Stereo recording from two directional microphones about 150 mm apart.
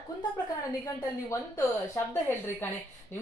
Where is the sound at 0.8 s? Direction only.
15° left (ahead or behind).